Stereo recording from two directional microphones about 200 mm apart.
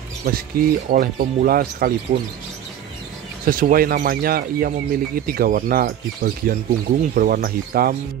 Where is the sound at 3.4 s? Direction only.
45° right (ahead or behind).